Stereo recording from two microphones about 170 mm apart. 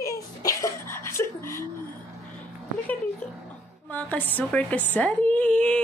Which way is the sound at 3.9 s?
10° left (ahead or behind).